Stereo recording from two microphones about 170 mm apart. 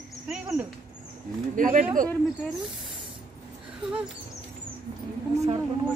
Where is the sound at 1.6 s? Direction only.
50° right (ahead or behind).